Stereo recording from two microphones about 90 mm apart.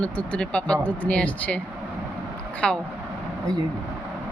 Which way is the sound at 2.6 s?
10° left (ahead or behind).